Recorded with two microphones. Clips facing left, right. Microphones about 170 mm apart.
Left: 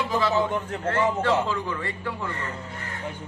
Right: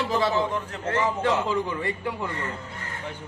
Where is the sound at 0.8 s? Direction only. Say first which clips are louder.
Left 1 dB; 15° right (ahead or behind).